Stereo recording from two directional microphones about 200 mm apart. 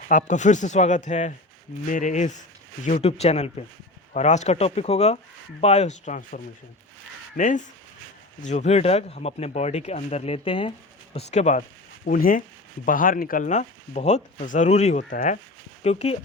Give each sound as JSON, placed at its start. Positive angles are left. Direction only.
{"t": 0.1, "sound": "speech", "side_deg": 40}